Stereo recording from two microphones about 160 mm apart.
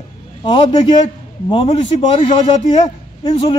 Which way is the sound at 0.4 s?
30° left (ahead or behind).